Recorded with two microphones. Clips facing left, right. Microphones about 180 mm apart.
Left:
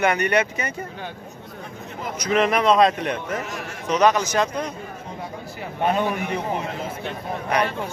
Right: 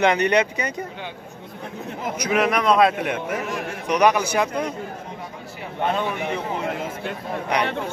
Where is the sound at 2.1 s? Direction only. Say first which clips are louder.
Left 1 dB; 5° right (ahead or behind).